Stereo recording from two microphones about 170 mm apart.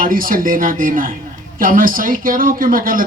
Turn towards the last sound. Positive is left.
turn(degrees=-55)  # may be behind; listen again after turning